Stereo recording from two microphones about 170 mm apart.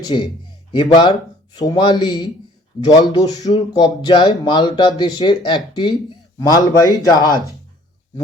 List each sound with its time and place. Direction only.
0.0 s speech: 25° left (ahead or behind)